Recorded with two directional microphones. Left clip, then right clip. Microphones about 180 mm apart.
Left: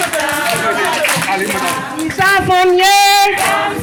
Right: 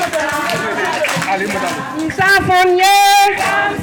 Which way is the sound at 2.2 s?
35° right (ahead or behind).